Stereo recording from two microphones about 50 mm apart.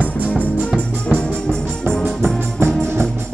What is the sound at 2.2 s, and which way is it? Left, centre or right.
Music, right.